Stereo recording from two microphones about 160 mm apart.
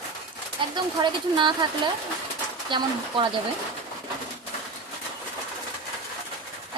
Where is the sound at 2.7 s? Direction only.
30° right (ahead or behind).